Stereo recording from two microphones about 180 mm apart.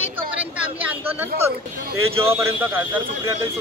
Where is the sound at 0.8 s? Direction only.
10° right (ahead or behind).